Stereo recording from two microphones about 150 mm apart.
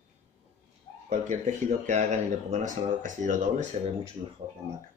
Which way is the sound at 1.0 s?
55° right (ahead or behind).